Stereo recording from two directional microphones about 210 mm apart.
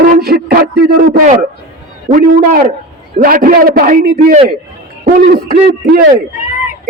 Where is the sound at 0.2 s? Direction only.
45° right (ahead or behind).